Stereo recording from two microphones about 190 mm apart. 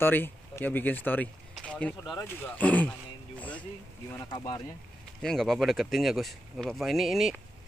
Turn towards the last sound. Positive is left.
turn(degrees=0)  # may be behind; listen again after turning